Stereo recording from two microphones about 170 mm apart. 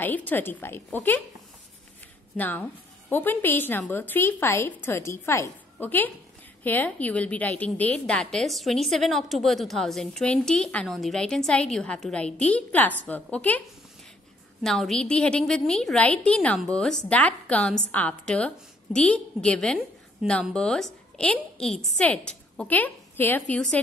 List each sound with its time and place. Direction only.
0.0 s a woman's voice: 10° left (ahead or behind)
2.3 s a woman's voice: 10° left (ahead or behind)
14.6 s a woman's voice: centre (ahead or behind)